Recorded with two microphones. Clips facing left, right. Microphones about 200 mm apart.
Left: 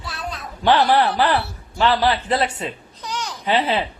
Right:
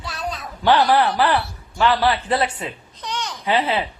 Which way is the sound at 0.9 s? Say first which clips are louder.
Even; 35° left (ahead or behind).